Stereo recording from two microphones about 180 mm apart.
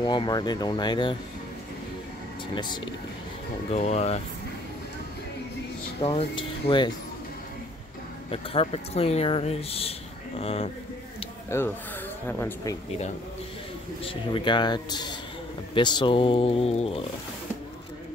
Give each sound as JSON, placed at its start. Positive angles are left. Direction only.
{"t": 0.0, "sound": "speech", "side_deg": 25}
{"t": 2.5, "sound": "speech", "side_deg": 25}
{"t": 3.7, "sound": "speech", "side_deg": 35}
{"t": 6.0, "sound": "speech", "side_deg": 30}
{"t": 8.3, "sound": "speech", "side_deg": 35}
{"t": 11.5, "sound": "speech", "side_deg": 15}
{"t": 14.0, "sound": "speech", "side_deg": 25}